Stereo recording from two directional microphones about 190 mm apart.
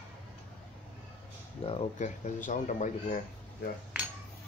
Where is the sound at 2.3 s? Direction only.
45° left (ahead or behind).